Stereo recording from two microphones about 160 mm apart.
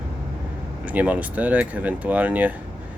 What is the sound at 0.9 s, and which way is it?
Speech, 10° right (ahead or behind).